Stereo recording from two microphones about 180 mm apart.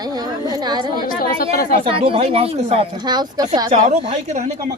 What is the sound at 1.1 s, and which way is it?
Speech, 50° left (ahead or behind).